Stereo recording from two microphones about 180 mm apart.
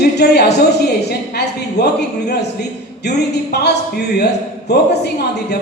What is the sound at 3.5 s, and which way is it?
Speech, 65° left (ahead or behind).